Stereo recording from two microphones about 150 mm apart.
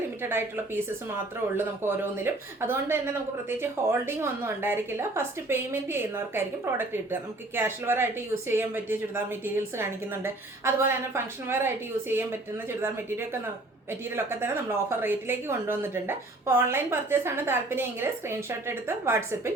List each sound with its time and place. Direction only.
0.2 s a woman's voice: 15° right (ahead or behind)